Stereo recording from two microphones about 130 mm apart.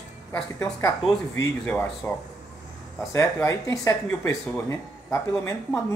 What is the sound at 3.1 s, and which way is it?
A woman's voice, 25° left (ahead or behind).